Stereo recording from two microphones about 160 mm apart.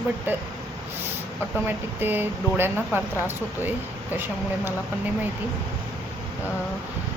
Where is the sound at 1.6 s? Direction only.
10° right (ahead or behind).